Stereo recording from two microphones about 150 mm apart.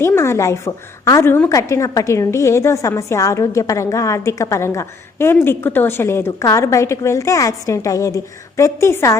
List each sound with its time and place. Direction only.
0.0 s a woman's voice: 15° left (ahead or behind)